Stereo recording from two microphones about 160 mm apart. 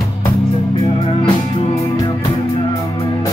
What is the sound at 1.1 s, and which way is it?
Music, 35° left (ahead or behind).